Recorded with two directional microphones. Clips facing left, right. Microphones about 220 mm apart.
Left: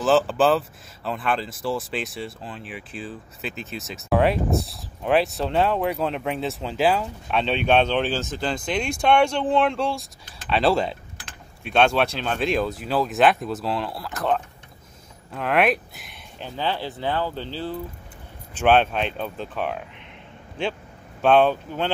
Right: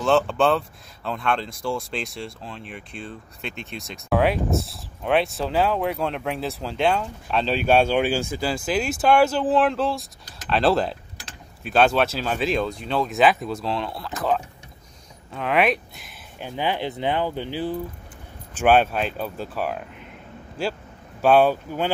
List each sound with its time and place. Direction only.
0.0 s speech: 5° left (ahead or behind)
16.3 s speech: 15° right (ahead or behind)
21.2 s speech: 5° right (ahead or behind)